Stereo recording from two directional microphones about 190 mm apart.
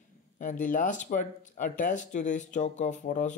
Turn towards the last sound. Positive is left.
turn(degrees=40)  # may be behind; listen again after turning